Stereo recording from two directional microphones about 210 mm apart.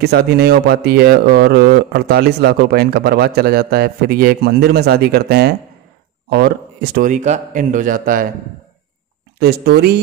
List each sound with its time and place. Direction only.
0.0 s a man's voice: 50° right (ahead or behind)
9.4 s a man's voice: 50° right (ahead or behind)